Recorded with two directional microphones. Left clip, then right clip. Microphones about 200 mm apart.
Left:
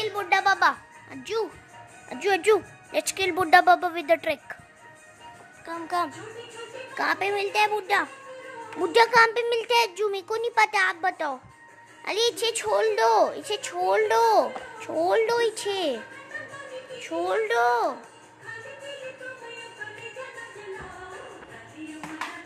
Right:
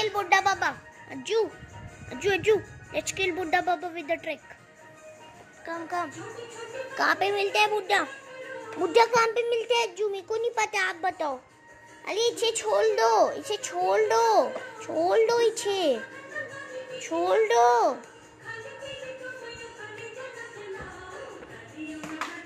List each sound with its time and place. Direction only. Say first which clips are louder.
0.0 s a sound: even; centre (ahead or behind)
1.1 s a woman's voice: right 2 dB; 10° left (ahead or behind); by 4.6 s 35° left (ahead or behind)
5.7 s speech: even; 10° left (ahead or behind)
7.0 s a woman's voice: right 1 dB; 15° left (ahead or behind)
17.0 s speech: right 2 dB; centre (ahead or behind)